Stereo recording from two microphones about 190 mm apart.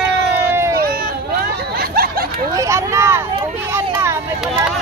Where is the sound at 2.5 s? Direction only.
15° right (ahead or behind).